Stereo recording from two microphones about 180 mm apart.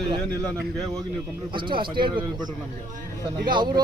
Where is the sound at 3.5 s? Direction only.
25° right (ahead or behind).